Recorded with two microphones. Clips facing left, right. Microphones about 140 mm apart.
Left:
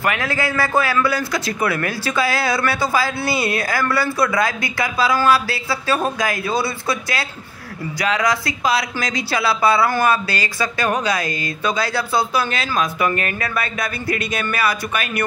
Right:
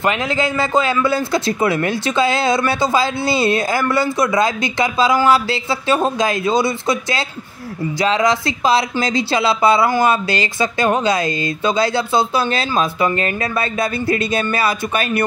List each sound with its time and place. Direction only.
0.0 s a man's voice: 20° right (ahead or behind)